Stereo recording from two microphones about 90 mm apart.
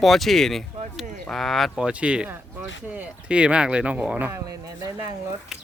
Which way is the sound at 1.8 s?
10° right (ahead or behind).